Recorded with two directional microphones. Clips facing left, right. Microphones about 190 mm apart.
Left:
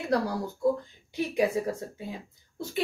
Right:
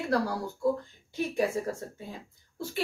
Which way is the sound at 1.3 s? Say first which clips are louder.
Left 3 dB; 15° left (ahead or behind).